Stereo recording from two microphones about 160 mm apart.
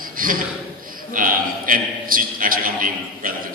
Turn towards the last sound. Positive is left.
turn(degrees=-60)  # may be behind; listen again after turning